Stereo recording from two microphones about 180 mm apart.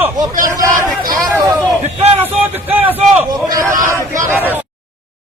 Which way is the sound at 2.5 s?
10° right (ahead or behind).